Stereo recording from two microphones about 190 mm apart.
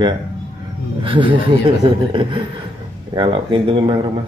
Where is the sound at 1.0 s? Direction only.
25° right (ahead or behind).